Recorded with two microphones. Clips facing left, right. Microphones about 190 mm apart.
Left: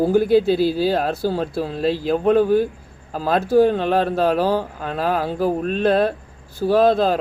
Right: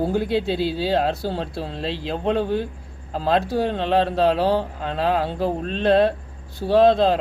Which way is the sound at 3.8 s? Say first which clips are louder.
Left 1 dB; 25° right (ahead or behind).